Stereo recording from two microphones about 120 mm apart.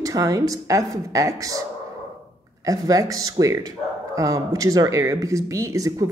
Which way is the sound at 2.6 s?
30° right (ahead or behind).